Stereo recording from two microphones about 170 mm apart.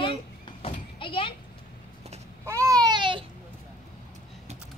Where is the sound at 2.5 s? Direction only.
20° right (ahead or behind).